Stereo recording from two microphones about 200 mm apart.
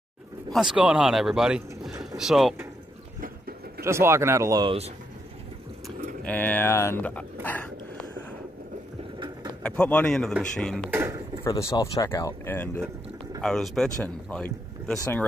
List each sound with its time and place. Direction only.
0.5 s speech: centre (ahead or behind)
3.2 s a sound: 50° right (ahead or behind)
3.8 s speech: 15° right (ahead or behind)
6.2 s speech: 10° left (ahead or behind)
9.6 s speech: 5° left (ahead or behind)
10.9 s speech: 10° right (ahead or behind)
11.4 s speech: 20° left (ahead or behind)